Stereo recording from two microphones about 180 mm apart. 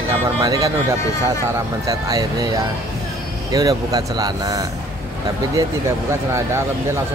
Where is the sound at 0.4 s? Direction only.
20° right (ahead or behind).